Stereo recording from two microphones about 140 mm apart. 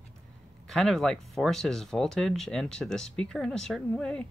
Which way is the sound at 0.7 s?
5° left (ahead or behind).